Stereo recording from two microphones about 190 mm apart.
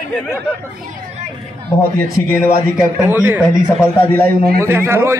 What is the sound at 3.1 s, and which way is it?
Speech, 10° right (ahead or behind).